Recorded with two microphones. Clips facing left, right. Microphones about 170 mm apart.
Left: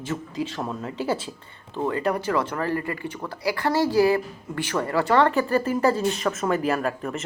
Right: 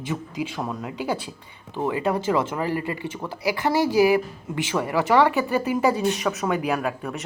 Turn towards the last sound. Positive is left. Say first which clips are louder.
# left 1 dB
turn(degrees=0)  # may be behind; listen again after turning